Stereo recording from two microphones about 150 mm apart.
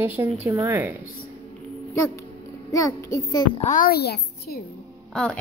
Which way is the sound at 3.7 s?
80° left.